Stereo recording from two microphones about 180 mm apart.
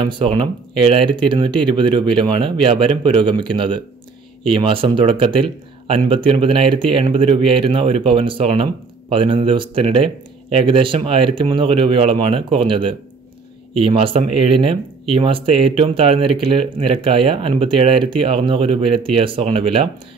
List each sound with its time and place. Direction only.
0.0 s speech: 25° right (ahead or behind)